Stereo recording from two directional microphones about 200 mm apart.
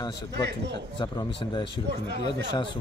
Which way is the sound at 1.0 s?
25° left (ahead or behind).